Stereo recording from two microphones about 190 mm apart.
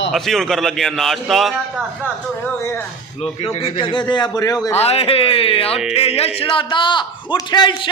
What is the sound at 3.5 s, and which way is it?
A man's voice, 30° left (ahead or behind).